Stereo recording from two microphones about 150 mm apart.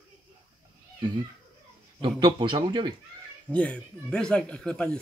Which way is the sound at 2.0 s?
30° right (ahead or behind).